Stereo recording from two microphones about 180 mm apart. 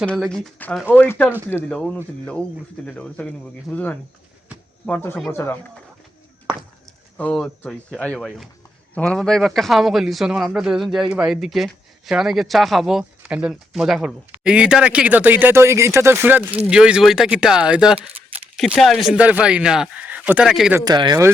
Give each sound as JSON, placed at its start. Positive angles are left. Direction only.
{"t": 0.0, "sound": "speech", "side_deg": 5}
{"t": 7.2, "sound": "speech", "side_deg": 5}
{"t": 20.7, "sound": "speech", "side_deg": -20}